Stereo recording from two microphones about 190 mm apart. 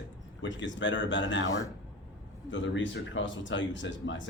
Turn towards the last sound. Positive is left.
turn(degrees=75)  # may be behind; listen again after turning